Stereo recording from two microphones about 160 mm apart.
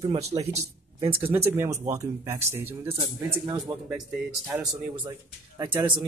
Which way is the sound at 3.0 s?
30° right (ahead or behind).